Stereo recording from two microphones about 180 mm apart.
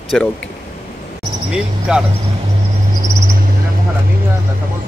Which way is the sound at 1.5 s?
5° right (ahead or behind).